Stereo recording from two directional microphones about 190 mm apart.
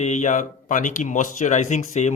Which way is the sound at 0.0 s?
40° left (ahead or behind).